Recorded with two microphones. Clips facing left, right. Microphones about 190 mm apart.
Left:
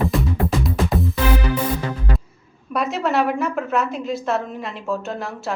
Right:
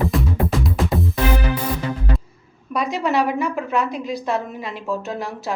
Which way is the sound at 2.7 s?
5° left (ahead or behind).